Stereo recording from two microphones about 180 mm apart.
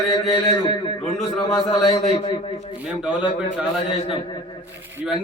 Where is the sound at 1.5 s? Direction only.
20° left (ahead or behind).